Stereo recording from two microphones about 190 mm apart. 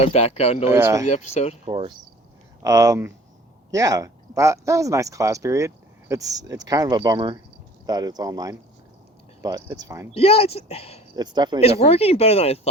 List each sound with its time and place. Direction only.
0.0 s speech: 35° left (ahead or behind)
0.7 s speech: 15° right (ahead or behind)
1.0 s speech: 35° left (ahead or behind)
1.6 s speech: 25° right (ahead or behind)
10.2 s speech: 30° left (ahead or behind)
11.1 s speech: 20° right (ahead or behind)
11.6 s speech: 30° left (ahead or behind)